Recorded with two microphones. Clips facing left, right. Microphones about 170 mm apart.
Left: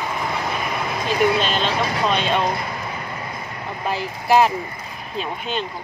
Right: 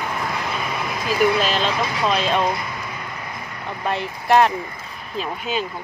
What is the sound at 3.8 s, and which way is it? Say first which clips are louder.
Speech: even; centre (ahead or behind).